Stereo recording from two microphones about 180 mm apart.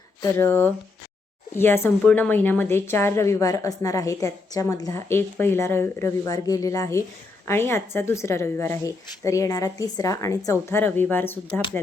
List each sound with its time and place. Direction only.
0.2 s a woman's voice: 15° left (ahead or behind)